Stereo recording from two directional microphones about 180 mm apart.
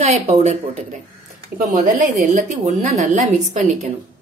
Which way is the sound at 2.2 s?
40° right (ahead or behind).